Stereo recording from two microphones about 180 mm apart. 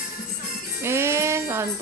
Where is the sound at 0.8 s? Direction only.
15° right (ahead or behind).